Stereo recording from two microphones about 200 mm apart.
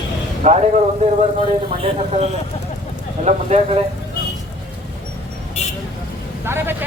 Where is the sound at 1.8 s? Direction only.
30° right (ahead or behind).